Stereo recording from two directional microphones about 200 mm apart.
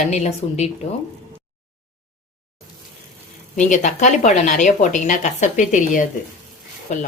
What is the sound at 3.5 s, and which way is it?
Speech, 40° left (ahead or behind).